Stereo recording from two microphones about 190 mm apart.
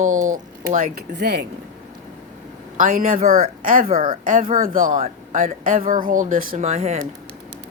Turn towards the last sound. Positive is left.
turn(degrees=-35)  # may be behind; listen again after turning